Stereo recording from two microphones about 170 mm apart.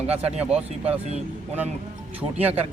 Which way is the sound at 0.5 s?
40° right (ahead or behind).